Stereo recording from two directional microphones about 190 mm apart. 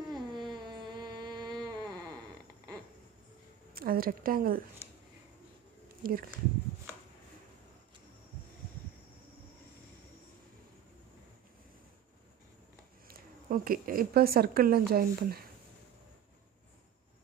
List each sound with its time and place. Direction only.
0.1 s a sound: 25° right (ahead or behind)
3.7 s a woman's voice: 50° right (ahead or behind)
6.0 s speech: 50° right (ahead or behind)
13.1 s speech: 50° right (ahead or behind)